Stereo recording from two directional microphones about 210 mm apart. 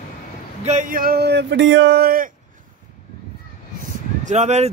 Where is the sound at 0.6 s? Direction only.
35° right (ahead or behind).